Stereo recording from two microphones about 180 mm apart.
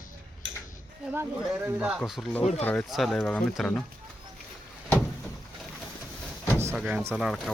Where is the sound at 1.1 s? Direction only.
10° right (ahead or behind); by 3.8 s 5° left (ahead or behind).